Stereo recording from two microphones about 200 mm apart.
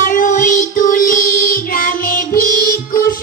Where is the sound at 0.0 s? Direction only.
40° left (ahead or behind).